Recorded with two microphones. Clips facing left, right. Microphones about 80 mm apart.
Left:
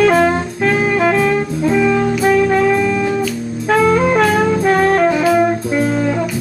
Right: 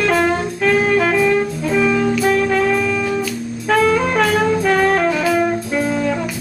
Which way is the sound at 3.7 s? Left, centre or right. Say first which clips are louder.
Left 3 dB; centre.